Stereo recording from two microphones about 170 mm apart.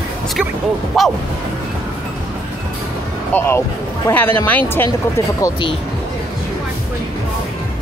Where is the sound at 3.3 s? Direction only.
15° left (ahead or behind).